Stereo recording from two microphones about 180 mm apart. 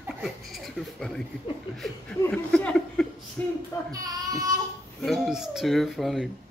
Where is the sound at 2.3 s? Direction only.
5° left (ahead or behind).